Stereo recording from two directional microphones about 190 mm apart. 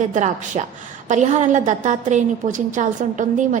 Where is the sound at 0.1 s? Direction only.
40° right (ahead or behind).